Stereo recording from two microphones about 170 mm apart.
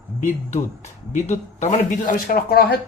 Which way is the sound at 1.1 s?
45° left (ahead or behind).